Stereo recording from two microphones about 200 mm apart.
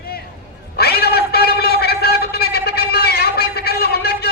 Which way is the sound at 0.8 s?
50° left (ahead or behind).